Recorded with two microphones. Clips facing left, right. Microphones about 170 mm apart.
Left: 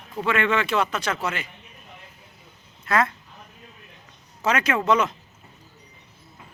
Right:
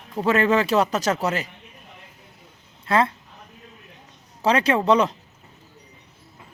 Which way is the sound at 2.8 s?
30° right (ahead or behind).